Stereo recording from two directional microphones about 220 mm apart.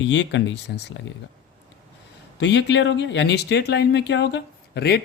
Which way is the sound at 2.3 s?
50° left (ahead or behind).